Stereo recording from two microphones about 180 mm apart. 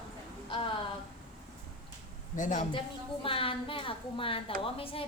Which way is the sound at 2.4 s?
45° left (ahead or behind).